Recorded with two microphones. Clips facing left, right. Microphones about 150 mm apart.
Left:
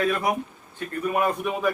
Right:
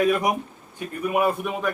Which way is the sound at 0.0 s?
15° right (ahead or behind).